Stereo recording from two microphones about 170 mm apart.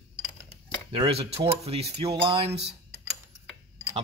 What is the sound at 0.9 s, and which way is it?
Speech, 35° right (ahead or behind).